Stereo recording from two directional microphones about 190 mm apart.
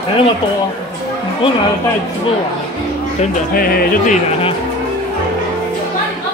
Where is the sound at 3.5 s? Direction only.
50° left (ahead or behind).